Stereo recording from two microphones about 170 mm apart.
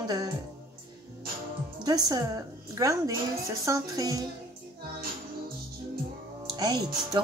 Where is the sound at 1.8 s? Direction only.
25° right (ahead or behind).